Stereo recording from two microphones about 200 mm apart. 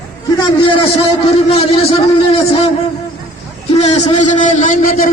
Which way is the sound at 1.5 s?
30° left (ahead or behind).